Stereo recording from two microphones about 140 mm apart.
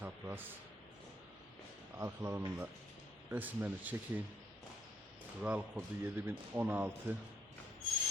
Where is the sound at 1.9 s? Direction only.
20° right (ahead or behind).